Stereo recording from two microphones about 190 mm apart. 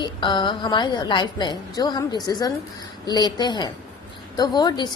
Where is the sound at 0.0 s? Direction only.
25° left (ahead or behind).